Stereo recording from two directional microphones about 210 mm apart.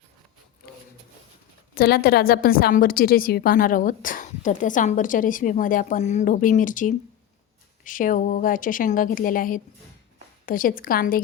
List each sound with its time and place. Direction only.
1.7 s a woman's voice: 45° left (ahead or behind)